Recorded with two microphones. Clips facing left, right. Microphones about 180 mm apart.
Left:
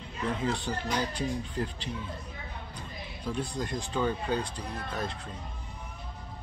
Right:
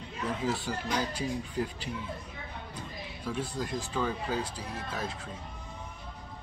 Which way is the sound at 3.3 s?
5° right (ahead or behind).